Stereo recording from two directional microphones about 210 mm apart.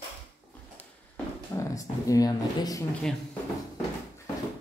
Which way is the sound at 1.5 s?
15° left (ahead or behind).